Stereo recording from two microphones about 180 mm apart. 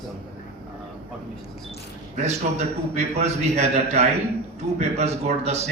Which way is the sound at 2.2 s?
40° right (ahead or behind).